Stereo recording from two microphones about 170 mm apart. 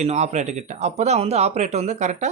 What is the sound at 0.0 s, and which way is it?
A man's voice, 40° right (ahead or behind).